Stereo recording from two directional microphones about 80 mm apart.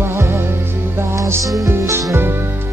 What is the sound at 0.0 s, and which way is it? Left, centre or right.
Music, right.